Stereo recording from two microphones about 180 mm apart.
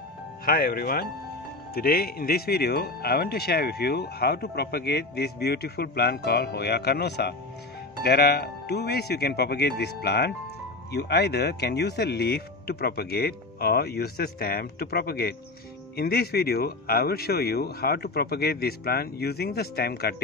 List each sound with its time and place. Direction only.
0.5 s speech: 55° left (ahead or behind)